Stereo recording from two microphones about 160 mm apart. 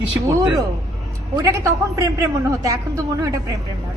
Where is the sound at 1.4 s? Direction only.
20° right (ahead or behind).